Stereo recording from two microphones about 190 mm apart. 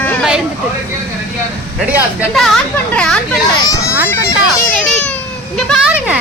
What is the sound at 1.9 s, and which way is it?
Speech, 5° right (ahead or behind).